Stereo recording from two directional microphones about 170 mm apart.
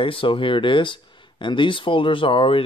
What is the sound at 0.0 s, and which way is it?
Speech, 30° left (ahead or behind).